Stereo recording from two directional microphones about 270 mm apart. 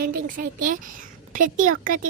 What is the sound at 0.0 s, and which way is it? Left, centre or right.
A woman's voice, right.